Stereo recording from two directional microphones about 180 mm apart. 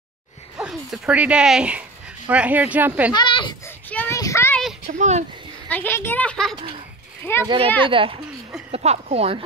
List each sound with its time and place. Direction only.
0.6 s speech: 5° right (ahead or behind)
3.2 s a child's voice: 25° left (ahead or behind)
3.6 s child singing: 10° left (ahead or behind)
4.9 s speech: 40° right (ahead or behind)
5.7 s speech: 10° left (ahead or behind)
7.4 s a woman's voice: 30° right (ahead or behind)